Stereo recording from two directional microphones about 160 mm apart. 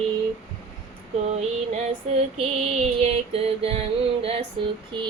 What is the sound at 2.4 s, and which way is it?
Mantra, 40° right (ahead or behind).